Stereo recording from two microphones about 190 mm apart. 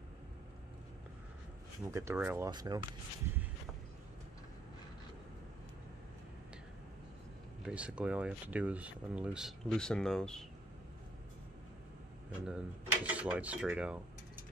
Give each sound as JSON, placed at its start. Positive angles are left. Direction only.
{"t": 1.9, "sound": "speech", "side_deg": -15}
{"t": 7.6, "sound": "speech", "side_deg": -5}
{"t": 12.4, "sound": "speech", "side_deg": -5}